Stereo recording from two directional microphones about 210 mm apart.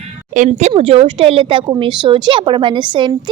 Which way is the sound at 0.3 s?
35° right (ahead or behind).